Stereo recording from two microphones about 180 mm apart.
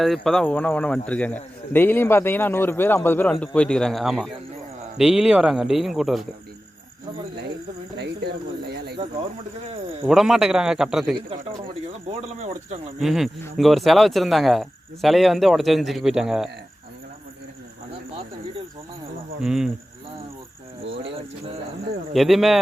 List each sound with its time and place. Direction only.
0.0 s speech: centre (ahead or behind)
7.9 s cricket: 65° right (ahead or behind)
10.0 s speech: centre (ahead or behind)
12.0 s speech: 35° right (ahead or behind)
13.0 s speech: centre (ahead or behind)
19.4 s speech: 5° right (ahead or behind)
22.1 s speech: centre (ahead or behind)